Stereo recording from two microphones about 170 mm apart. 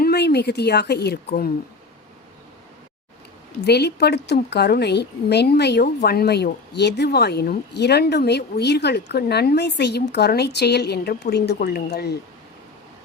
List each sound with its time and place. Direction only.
0.0 s a woman's voice: 70° left (ahead or behind)
3.7 s a woman's voice: 75° left (ahead or behind)